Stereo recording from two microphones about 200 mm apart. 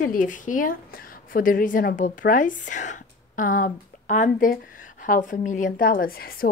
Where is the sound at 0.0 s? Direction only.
40° left (ahead or behind).